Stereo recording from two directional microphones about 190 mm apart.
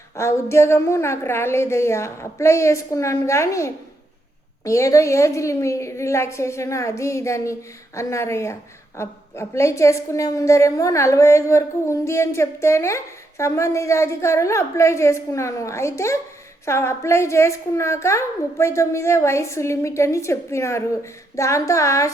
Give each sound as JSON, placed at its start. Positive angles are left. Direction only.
{"t": 0.2, "sound": "a woman's voice", "side_deg": 15}